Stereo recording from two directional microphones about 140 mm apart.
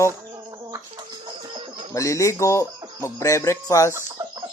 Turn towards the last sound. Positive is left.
turn(degrees=20)  # may be behind; listen again after turning